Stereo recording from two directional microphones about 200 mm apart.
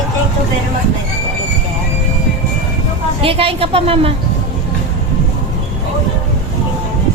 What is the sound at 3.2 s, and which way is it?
Speech, 30° right (ahead or behind).